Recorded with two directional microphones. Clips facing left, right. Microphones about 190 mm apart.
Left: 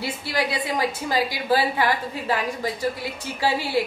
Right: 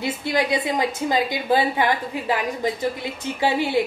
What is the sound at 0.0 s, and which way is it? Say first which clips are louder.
A woman's voice: right 3 dB; 20° right (ahead or behind).